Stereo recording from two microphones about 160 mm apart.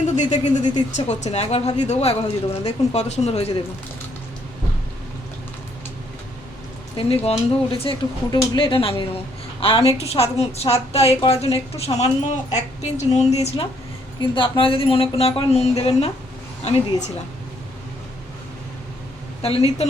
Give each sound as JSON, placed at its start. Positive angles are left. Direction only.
{"t": 0.2, "sound": "a woman's voice", "side_deg": 50}
{"t": 6.9, "sound": "a woman's voice", "side_deg": 35}
{"t": 14.2, "sound": "a woman's voice", "side_deg": 30}
{"t": 19.4, "sound": "a woman's voice", "side_deg": 40}